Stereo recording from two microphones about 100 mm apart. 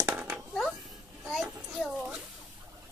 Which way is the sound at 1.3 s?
Centre (ahead or behind).